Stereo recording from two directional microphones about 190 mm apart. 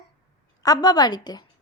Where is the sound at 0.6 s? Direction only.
20° left (ahead or behind).